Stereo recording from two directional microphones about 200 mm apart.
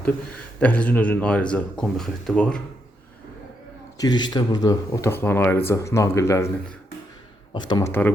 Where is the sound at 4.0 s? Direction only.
20° left (ahead or behind).